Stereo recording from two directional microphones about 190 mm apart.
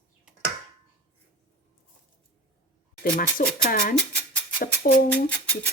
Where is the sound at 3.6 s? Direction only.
50° left (ahead or behind).